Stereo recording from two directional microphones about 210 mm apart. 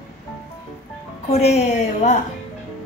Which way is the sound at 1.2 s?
30° left (ahead or behind).